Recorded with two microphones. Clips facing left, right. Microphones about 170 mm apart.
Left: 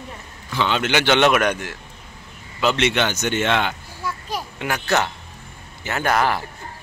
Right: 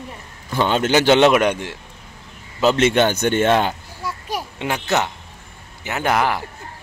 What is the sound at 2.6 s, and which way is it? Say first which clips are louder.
A man's voice: right 4 dB; 40° right (ahead or behind).